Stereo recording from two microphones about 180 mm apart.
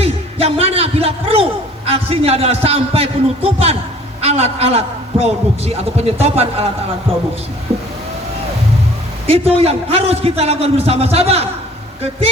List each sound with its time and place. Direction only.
0.0 s a sound: 35° right (ahead or behind)
1.9 s a man's voice: 35° right (ahead or behind)
9.2 s a man's voice: 30° right (ahead or behind)